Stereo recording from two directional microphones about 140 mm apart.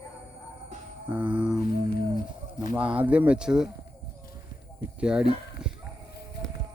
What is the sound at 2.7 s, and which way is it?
Speech, 10° right (ahead or behind).